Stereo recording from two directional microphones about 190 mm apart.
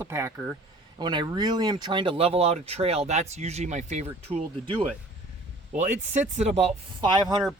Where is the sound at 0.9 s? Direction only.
25° right (ahead or behind).